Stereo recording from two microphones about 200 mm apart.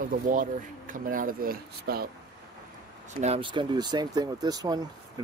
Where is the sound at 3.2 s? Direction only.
30° right (ahead or behind).